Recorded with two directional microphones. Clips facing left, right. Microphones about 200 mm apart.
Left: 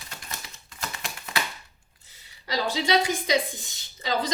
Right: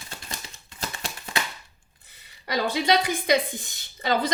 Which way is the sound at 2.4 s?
60° right (ahead or behind).